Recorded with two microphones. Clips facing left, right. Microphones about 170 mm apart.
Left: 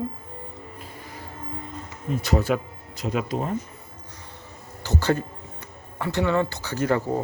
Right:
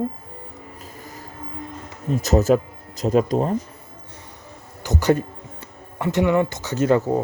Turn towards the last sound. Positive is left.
turn(degrees=-20)  # may be behind; listen again after turning